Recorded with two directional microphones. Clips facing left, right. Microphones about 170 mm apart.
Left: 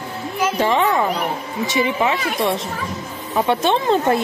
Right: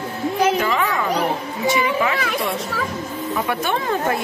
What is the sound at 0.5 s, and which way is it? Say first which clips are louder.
Speech: left 3 dB; 30° left (ahead or behind).